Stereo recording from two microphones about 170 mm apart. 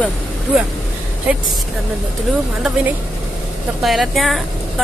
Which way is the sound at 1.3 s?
5° right (ahead or behind).